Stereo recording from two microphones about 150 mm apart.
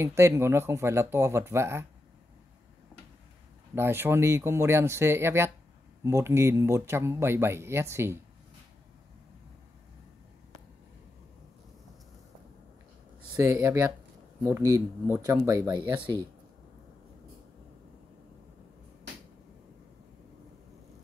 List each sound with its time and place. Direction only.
0.0 s speech: 20° right (ahead or behind)
3.7 s speech: 15° right (ahead or behind)
13.4 s speech: 20° right (ahead or behind)
15.1 s speech: 10° right (ahead or behind)
15.7 s speech: 30° right (ahead or behind)